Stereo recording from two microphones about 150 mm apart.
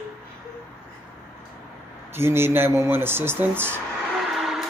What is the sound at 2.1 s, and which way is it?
Speech, 15° right (ahead or behind).